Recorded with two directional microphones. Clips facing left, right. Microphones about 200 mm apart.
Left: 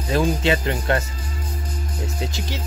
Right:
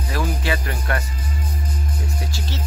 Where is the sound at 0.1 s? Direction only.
25° left (ahead or behind).